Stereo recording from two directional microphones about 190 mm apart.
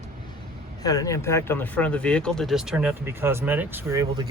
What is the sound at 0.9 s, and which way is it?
Speech, 20° left (ahead or behind).